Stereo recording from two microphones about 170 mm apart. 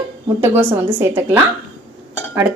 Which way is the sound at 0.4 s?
15° right (ahead or behind).